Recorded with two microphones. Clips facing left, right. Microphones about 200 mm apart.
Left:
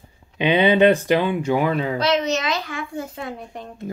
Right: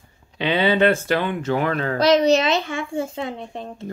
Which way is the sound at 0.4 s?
15° left (ahead or behind).